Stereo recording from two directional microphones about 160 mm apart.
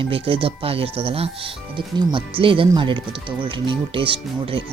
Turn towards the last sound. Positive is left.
turn(degrees=-35)  # may be behind; listen again after turning